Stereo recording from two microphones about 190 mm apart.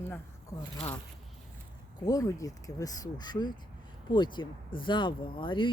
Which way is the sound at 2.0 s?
20° left (ahead or behind).